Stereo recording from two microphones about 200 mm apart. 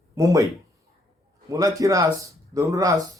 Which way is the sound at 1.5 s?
15° right (ahead or behind).